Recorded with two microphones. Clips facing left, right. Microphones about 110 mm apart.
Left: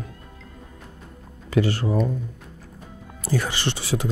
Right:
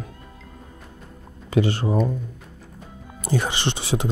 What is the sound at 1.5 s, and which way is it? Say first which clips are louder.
Speech: right 1 dB; 20° right (ahead or behind).